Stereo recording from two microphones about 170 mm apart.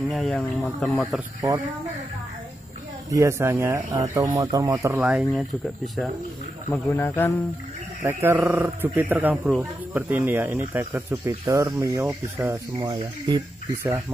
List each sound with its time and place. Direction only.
0.1 s speech: 5° left (ahead or behind)
3.1 s speech: 15° right (ahead or behind); by 6.0 s centre (ahead or behind)
6.7 s a man's voice: 10° left (ahead or behind)
8.0 s speech: 15° right (ahead or behind)
13.3 s speech: 25° right (ahead or behind)